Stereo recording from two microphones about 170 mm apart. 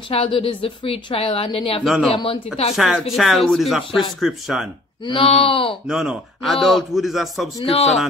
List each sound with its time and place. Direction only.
0.1 s a woman's voice: 35° left (ahead or behind)
2.7 s a man's voice: centre (ahead or behind)
5.0 s a woman's voice: 30° left (ahead or behind)
5.9 s a man's voice: 5° right (ahead or behind)
7.6 s a woman's voice: 35° left (ahead or behind)